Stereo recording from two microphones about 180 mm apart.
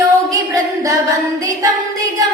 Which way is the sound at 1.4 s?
20° right (ahead or behind).